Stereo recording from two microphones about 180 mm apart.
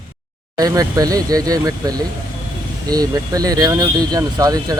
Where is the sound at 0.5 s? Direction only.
20° right (ahead or behind).